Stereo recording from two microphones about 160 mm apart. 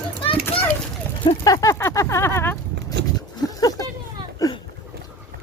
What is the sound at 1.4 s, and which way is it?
Speech, 20° left (ahead or behind).